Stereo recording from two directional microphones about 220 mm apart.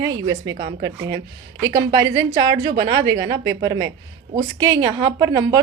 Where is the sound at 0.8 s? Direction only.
15° right (ahead or behind).